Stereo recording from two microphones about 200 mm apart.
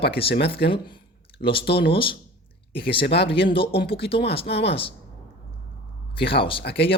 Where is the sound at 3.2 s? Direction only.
25° left (ahead or behind).